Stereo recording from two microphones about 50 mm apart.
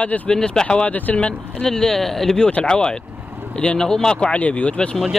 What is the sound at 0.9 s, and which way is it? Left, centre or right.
Speech, left.